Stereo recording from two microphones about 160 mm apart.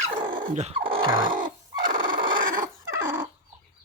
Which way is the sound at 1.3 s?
55° right (ahead or behind).